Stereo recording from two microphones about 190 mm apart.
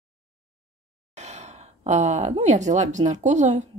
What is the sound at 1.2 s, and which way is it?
Speech, 35° right (ahead or behind).